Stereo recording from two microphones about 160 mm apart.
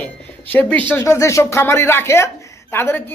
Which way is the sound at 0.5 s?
10° left (ahead or behind).